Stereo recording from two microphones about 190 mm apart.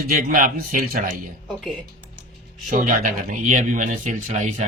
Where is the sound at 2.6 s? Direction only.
45° right (ahead or behind).